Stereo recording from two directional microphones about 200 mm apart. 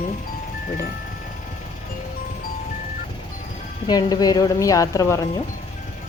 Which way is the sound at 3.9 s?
20° left (ahead or behind).